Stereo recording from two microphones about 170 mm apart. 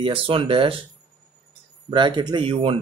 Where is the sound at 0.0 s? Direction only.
30° right (ahead or behind).